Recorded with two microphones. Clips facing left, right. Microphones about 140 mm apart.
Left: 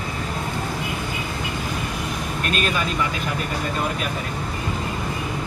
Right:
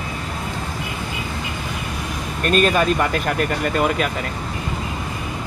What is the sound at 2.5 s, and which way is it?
Speech, 45° right (ahead or behind).